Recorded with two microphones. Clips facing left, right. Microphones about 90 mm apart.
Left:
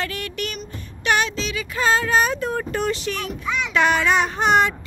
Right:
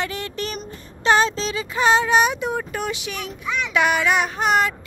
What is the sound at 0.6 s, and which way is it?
Music, 30° right (ahead or behind).